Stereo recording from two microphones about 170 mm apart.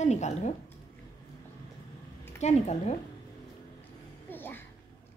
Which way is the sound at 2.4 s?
40° left (ahead or behind).